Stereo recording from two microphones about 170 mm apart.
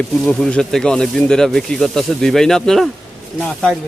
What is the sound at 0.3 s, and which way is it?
Speech, 5° left (ahead or behind).